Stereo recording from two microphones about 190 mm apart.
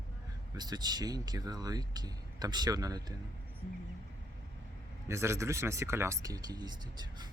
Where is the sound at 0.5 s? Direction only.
20° right (ahead or behind).